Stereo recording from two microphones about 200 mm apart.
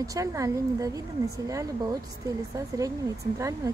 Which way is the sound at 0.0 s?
15° right (ahead or behind).